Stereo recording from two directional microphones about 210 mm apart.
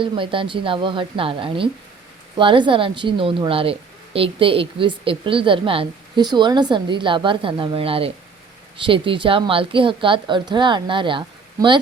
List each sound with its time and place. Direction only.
0.0 s a woman's voice: 25° right (ahead or behind)